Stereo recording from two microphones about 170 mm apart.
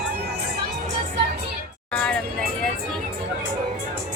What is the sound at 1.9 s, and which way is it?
Vehicle, 5° left (ahead or behind).